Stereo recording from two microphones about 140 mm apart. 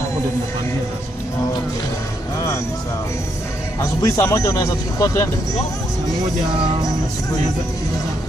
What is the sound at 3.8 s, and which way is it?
A man's voice, 20° left (ahead or behind).